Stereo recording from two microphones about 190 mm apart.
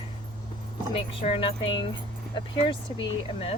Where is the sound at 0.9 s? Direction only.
30° left (ahead or behind).